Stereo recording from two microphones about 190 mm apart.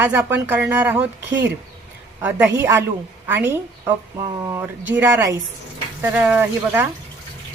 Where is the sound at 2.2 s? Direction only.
10° right (ahead or behind).